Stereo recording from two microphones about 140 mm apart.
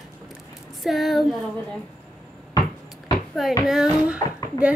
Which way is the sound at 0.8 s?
Centre (ahead or behind).